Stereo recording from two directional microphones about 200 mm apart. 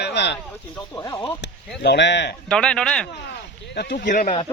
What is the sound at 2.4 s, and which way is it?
Speech, 5° left (ahead or behind).